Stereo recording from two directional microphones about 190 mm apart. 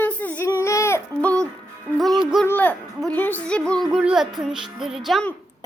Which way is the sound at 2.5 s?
10° left (ahead or behind).